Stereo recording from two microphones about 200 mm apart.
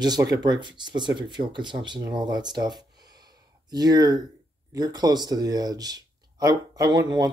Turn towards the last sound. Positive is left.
turn(degrees=-20)  # may be behind; listen again after turning